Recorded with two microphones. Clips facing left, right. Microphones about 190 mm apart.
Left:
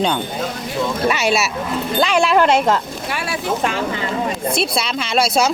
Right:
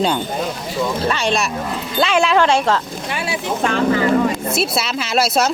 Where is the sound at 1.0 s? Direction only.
10° left (ahead or behind).